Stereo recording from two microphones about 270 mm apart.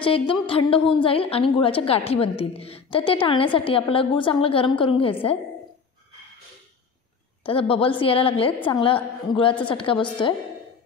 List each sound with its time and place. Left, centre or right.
0.0 s a woman's voice: centre
7.4 s a woman's voice: centre